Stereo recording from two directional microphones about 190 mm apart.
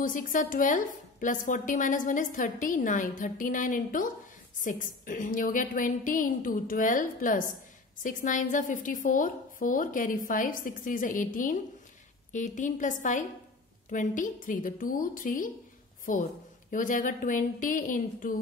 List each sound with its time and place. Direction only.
0.0 s a woman's voice: 45° left (ahead or behind)